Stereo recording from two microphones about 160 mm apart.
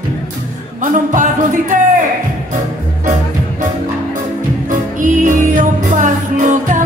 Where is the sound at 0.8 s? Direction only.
55° right (ahead or behind).